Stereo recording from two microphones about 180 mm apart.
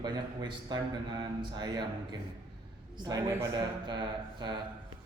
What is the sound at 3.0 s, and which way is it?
Speech, 20° right (ahead or behind).